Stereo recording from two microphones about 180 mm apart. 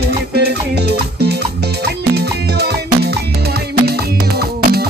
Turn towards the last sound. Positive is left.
turn(degrees=-60)  # may be behind; listen again after turning